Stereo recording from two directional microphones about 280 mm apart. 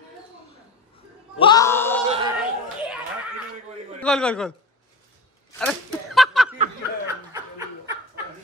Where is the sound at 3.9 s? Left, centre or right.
Centre.